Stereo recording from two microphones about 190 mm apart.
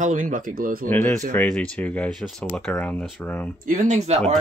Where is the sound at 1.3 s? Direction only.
5° left (ahead or behind).